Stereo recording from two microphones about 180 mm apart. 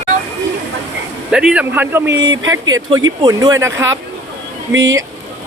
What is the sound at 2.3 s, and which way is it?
Speech, 90° right.